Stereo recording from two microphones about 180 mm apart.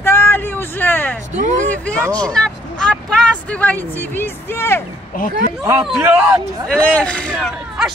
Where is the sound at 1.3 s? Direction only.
45° right (ahead or behind).